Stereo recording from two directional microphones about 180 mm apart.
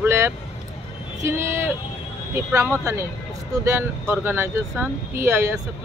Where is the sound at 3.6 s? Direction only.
15° right (ahead or behind).